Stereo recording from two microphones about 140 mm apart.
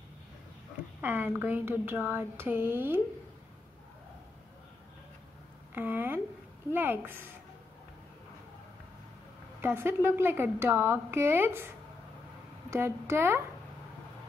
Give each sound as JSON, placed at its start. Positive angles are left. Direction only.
{"t": 1.0, "sound": "speech", "side_deg": -10}
{"t": 5.8, "sound": "speech", "side_deg": -15}
{"t": 9.6, "sound": "speech", "side_deg": -15}